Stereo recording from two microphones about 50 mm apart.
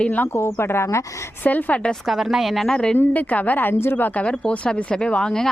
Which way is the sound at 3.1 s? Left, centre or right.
Left.